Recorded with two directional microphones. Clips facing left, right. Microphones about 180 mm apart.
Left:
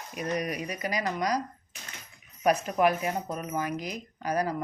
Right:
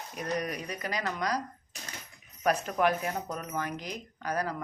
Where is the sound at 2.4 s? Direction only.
10° left (ahead or behind).